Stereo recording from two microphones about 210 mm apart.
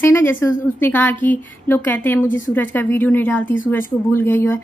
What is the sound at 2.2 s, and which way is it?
Speech, 40° left (ahead or behind).